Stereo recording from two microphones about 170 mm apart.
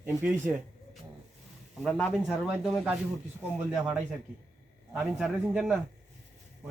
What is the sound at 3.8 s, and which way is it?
A man's voice, 5° right (ahead or behind).